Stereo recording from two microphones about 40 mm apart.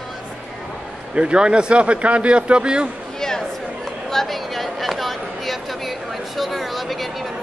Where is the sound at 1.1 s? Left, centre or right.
Right.